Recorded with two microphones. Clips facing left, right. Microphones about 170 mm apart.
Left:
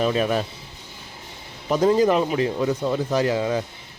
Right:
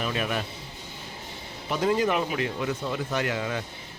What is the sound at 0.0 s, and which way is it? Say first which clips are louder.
Speech: left 8 dB; 35° left (ahead or behind).